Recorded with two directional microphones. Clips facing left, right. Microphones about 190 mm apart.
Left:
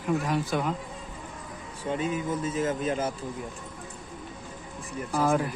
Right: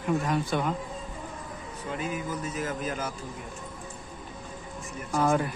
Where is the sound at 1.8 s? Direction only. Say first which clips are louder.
Left 4 dB; 30° left (ahead or behind).